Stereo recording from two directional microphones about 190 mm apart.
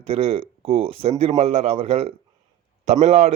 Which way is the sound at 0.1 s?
30° right (ahead or behind).